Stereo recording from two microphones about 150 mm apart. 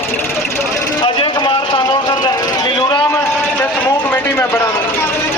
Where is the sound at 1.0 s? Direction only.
35° left (ahead or behind).